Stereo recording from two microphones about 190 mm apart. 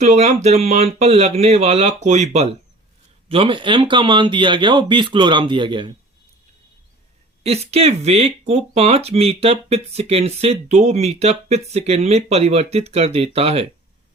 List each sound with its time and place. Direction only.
0.0 s speech: 35° right (ahead or behind)
7.4 s speech: 35° right (ahead or behind)